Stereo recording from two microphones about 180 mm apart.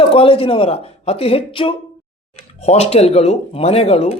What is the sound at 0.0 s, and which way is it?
Speech, 30° left (ahead or behind).